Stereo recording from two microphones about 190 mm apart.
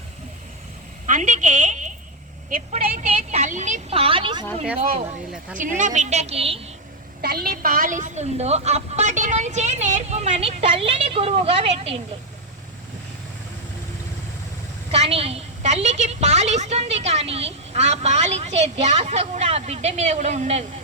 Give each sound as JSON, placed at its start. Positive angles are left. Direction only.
{"t": 1.0, "sound": "a woman's voice", "side_deg": -40}
{"t": 5.6, "sound": "a woman's voice", "side_deg": -40}
{"t": 7.2, "sound": "a woman's voice", "side_deg": -55}
{"t": 14.8, "sound": "a woman's voice", "side_deg": -35}